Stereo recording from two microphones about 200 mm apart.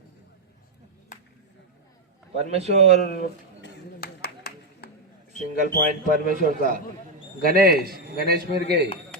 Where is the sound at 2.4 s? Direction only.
35° right (ahead or behind).